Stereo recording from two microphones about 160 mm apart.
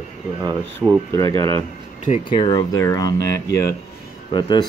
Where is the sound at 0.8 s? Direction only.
10° right (ahead or behind).